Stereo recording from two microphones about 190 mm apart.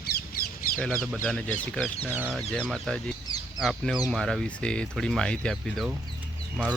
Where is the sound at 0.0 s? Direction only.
55° left (ahead or behind).